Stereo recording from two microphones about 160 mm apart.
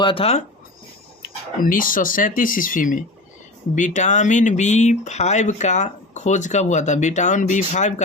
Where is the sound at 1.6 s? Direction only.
60° left (ahead or behind).